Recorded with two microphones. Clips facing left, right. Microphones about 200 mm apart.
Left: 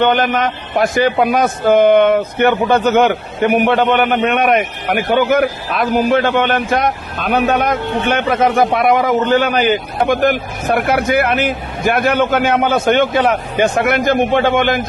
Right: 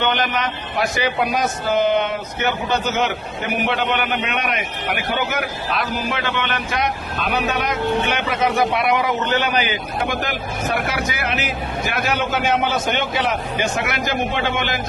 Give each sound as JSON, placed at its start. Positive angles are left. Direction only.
{"t": 0.0, "sound": "a man's voice", "side_deg": 50}